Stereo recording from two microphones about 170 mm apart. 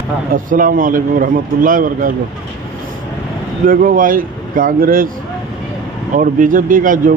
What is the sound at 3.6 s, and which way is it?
Speech, 55° right (ahead or behind).